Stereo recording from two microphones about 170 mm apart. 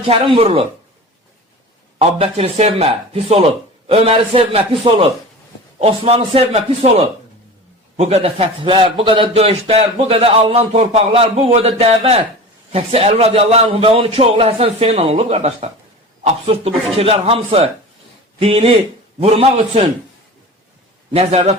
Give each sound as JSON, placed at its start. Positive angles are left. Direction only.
{"t": 0.0, "sound": "a man's voice", "side_deg": -30}
{"t": 2.0, "sound": "a man's voice", "side_deg": -35}
{"t": 21.1, "sound": "a man's voice", "side_deg": -35}